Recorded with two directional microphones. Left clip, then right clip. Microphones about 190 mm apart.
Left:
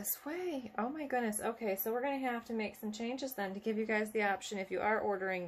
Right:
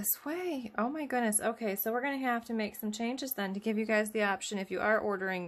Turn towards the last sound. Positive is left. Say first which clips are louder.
# right 2 dB
turn(degrees=-40)  # may be behind; listen again after turning